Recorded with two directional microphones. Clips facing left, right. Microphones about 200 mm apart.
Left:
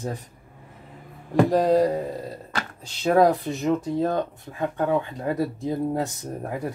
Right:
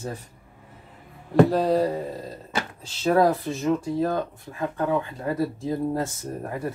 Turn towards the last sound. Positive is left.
turn(degrees=15)  # may be behind; listen again after turning